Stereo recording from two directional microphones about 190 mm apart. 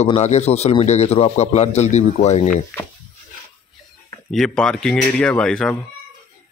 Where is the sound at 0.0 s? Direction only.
35° left (ahead or behind).